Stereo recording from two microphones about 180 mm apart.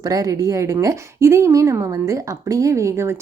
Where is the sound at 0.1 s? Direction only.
20° right (ahead or behind).